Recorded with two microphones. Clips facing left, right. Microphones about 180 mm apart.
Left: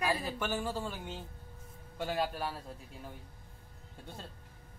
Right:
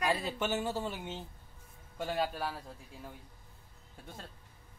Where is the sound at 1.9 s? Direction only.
Centre (ahead or behind).